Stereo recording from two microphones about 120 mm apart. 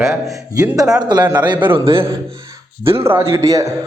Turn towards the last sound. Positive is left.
turn(degrees=-30)  # may be behind; listen again after turning